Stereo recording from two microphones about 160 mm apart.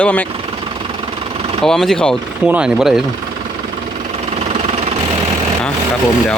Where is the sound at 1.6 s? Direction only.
5° left (ahead or behind).